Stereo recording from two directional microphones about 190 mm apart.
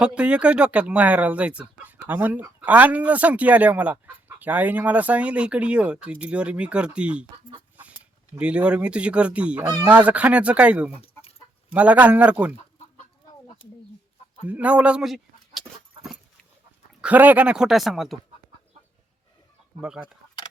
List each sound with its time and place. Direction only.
0.0 s speech: 5° right (ahead or behind)
8.4 s fowl: 5° right (ahead or behind)
9.8 s speech: 5° right (ahead or behind)
11.0 s chicken: 30° left (ahead or behind)
11.7 s speech: 5° right (ahead or behind)
14.4 s speech: 5° right (ahead or behind)
17.0 s fowl: 10° right (ahead or behind)
19.8 s fowl: 5° right (ahead or behind)